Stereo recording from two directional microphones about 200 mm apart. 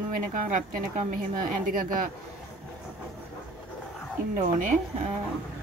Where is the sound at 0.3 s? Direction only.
40° right (ahead or behind).